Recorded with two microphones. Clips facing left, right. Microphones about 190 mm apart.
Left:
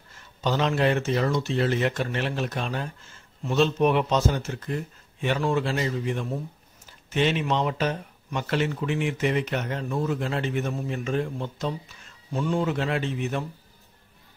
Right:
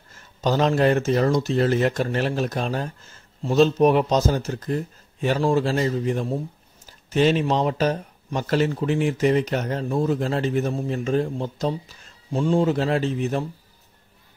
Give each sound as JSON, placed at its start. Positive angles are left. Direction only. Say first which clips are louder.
{"t": 0.1, "sound": "speech", "louder": "right 4 dB", "side_deg": -40}